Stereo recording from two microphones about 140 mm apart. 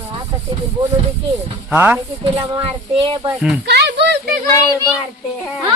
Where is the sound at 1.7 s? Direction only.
10° right (ahead or behind).